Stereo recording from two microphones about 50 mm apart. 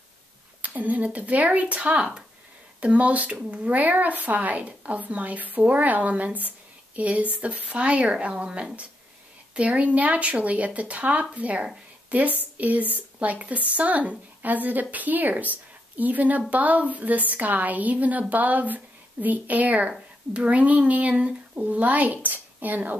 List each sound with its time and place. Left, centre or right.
0.6 s a woman's voice: right